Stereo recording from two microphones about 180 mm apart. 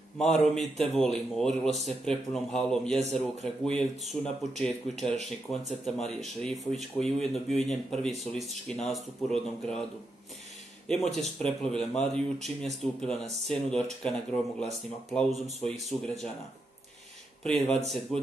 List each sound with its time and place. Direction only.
0.2 s speech: centre (ahead or behind)
10.9 s speech: centre (ahead or behind)
17.4 s speech: centre (ahead or behind)